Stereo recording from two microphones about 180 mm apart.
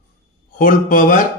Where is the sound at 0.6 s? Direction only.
50° left (ahead or behind).